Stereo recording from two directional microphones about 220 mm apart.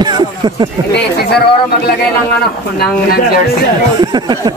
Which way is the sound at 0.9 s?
50° left (ahead or behind).